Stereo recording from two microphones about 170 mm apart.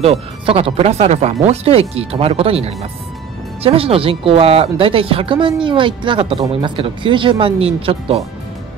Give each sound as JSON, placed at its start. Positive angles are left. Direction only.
{"t": 0.0, "sound": "speech", "side_deg": -35}